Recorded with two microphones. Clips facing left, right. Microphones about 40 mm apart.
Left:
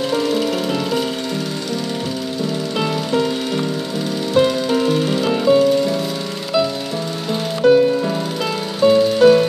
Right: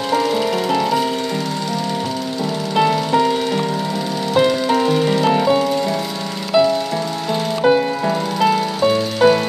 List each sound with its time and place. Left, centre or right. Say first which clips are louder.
0.1 s music: right 4 dB; centre
2.8 s music: right 5 dB; centre
7.6 s music: left 4 dB; centre